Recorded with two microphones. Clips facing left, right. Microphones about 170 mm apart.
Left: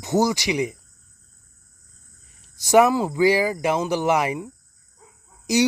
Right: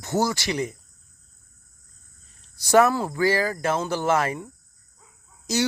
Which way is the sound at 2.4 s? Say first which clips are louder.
Left 2 dB; 15° left (ahead or behind).